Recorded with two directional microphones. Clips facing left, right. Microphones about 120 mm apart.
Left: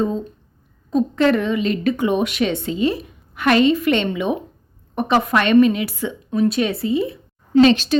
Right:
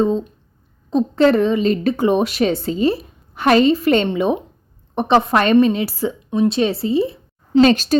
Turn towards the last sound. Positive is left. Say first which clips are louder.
# even
turn(degrees=-40)  # may be behind; listen again after turning